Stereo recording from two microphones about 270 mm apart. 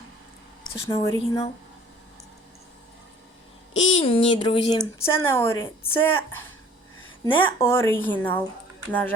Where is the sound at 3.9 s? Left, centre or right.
Centre.